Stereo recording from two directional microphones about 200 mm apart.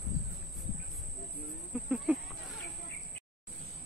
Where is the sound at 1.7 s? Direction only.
5° right (ahead or behind).